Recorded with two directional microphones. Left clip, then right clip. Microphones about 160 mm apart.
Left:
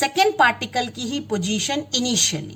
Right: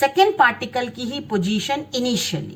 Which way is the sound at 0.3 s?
45° left (ahead or behind).